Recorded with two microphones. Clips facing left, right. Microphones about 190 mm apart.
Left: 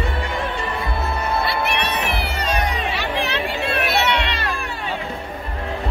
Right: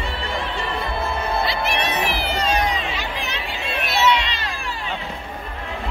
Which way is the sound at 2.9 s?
65° left (ahead or behind).